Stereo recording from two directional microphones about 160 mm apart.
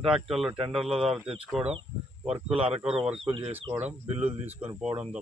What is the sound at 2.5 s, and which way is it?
Speech, 40° right (ahead or behind).